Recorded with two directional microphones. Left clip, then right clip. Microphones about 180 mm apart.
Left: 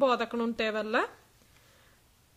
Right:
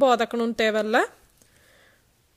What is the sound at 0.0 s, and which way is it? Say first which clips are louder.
A woman's voice: right 7 dB; 45° right (ahead or behind).